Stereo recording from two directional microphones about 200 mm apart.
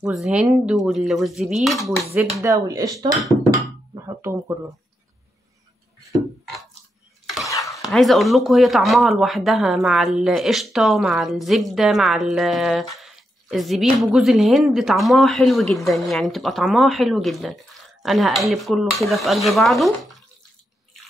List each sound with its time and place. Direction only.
0.0 s speech: 5° right (ahead or behind)
2.4 s speech: 20° right (ahead or behind)
3.4 s a sound: 15° right (ahead or behind)
7.5 s stir: 15° left (ahead or behind)
7.8 s speech: centre (ahead or behind)